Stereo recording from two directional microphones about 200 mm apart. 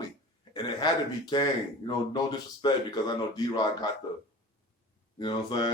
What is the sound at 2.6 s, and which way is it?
Speech, 20° left (ahead or behind).